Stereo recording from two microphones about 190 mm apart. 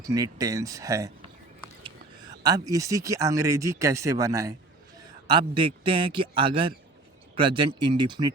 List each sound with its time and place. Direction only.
0.0 s speech: 15° right (ahead or behind)
2.4 s a man's voice: 20° right (ahead or behind)